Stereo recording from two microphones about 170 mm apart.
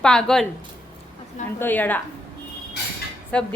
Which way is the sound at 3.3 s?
5° left (ahead or behind).